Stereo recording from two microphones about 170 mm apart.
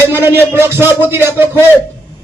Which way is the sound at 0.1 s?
15° right (ahead or behind).